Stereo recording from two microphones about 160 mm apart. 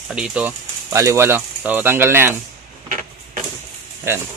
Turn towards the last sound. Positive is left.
turn(degrees=-15)  # may be behind; listen again after turning